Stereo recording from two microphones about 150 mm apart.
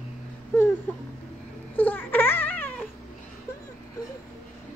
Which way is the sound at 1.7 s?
10° left (ahead or behind).